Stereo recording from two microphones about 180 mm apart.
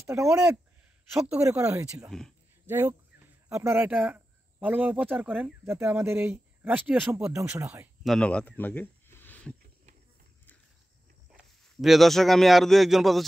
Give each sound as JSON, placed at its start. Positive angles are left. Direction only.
{"t": 0.0, "sound": "speech", "side_deg": -15}
{"t": 2.0, "sound": "speech", "side_deg": 0}
{"t": 2.6, "sound": "speech", "side_deg": -10}
{"t": 8.0, "sound": "speech", "side_deg": 5}
{"t": 11.3, "sound": "speech", "side_deg": 0}